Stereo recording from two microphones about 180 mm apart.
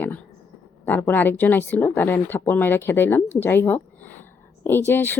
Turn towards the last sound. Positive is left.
turn(degrees=10)  # may be behind; listen again after turning